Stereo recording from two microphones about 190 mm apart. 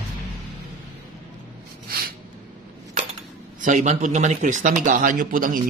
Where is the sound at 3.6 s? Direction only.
40° right (ahead or behind).